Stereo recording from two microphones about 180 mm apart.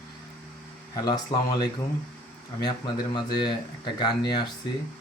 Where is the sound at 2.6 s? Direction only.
25° left (ahead or behind).